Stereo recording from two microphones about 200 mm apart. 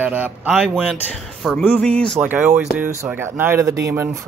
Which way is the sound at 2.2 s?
10° right (ahead or behind).